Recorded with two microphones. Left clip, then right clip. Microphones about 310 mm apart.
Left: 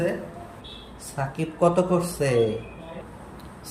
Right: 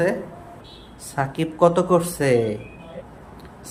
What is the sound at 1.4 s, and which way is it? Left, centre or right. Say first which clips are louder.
Speech: right 3 dB; centre.